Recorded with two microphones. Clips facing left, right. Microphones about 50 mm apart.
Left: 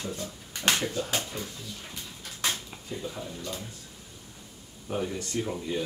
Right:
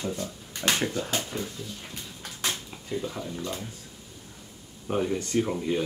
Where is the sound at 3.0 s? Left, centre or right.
Centre.